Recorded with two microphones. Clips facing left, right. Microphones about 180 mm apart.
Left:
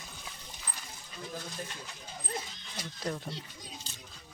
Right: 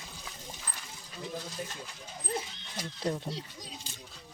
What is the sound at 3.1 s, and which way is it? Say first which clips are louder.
Speech: right 3 dB; 30° right (ahead or behind).